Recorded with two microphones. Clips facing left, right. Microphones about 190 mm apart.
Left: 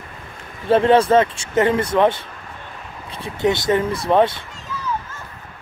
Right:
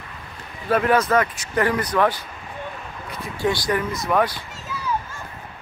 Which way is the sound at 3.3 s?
20° left (ahead or behind).